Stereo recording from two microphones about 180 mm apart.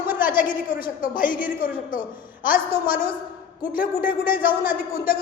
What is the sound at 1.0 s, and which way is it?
Speech, 50° left (ahead or behind).